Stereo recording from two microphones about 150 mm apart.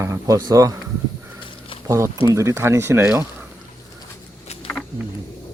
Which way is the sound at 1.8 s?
20° right (ahead or behind).